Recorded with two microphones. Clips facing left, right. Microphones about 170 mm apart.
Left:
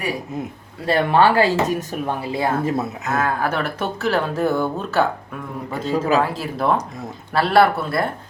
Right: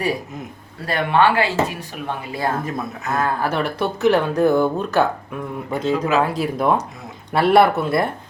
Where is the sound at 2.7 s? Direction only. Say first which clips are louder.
Left 4 dB; 25° left (ahead or behind).